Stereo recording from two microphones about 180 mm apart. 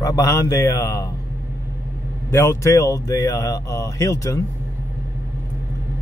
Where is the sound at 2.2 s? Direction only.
15° left (ahead or behind).